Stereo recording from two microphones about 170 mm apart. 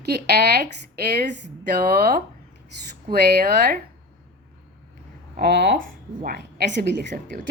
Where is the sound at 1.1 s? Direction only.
90° right.